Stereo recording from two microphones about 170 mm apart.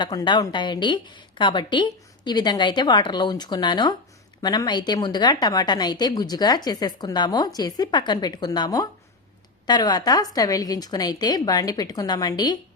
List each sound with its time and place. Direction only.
0.0 s a woman's voice: 25° left (ahead or behind)